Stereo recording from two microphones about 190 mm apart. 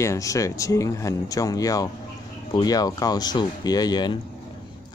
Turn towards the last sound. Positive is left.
turn(degrees=20)  # may be behind; listen again after turning